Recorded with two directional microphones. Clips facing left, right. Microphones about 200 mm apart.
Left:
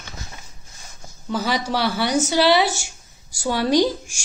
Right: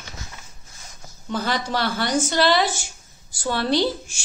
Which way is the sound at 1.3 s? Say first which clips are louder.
Left 2 dB; 10° left (ahead or behind).